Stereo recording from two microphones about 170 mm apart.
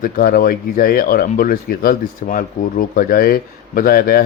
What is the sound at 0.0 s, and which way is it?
Speech, 60° left (ahead or behind).